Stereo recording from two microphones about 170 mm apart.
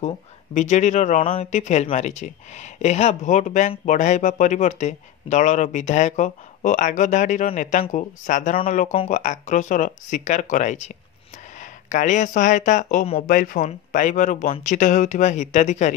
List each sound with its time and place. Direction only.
0.6 s speech: 45° left (ahead or behind)
13.3 s speech: 55° left (ahead or behind)
13.6 s speech: 45° left (ahead or behind)